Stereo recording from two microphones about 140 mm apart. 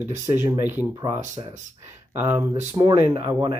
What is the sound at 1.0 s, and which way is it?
Speech, 25° right (ahead or behind).